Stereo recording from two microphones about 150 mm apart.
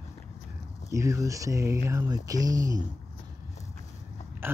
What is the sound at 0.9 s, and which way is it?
Speech, 20° right (ahead or behind).